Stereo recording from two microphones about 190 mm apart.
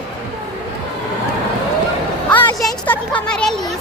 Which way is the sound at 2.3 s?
10° left (ahead or behind).